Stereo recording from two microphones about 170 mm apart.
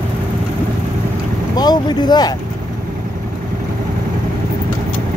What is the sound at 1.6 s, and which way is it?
Speech, 25° left (ahead or behind).